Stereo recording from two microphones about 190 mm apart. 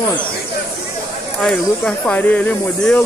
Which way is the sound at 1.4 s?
5° left (ahead or behind).